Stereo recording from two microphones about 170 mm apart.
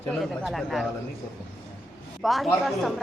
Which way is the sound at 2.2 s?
Centre (ahead or behind).